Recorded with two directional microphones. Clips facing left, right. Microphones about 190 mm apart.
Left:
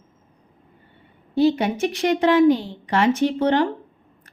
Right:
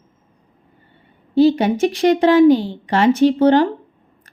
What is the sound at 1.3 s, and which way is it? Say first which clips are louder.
Speech: right 5 dB; 30° right (ahead or behind).